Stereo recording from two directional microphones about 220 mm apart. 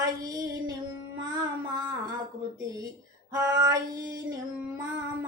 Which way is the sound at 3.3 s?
15° right (ahead or behind).